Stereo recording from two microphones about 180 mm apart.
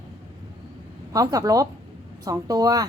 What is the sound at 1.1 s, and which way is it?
A woman's voice, 20° right (ahead or behind).